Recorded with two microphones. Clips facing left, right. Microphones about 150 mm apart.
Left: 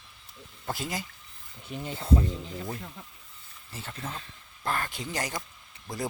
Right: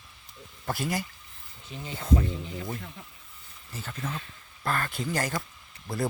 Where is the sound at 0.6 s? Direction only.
20° left (ahead or behind).